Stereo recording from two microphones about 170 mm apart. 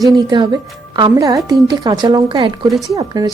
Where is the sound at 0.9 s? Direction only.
20° right (ahead or behind).